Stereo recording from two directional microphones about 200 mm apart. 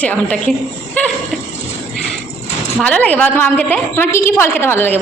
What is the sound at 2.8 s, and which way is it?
A woman's voice, 5° left (ahead or behind).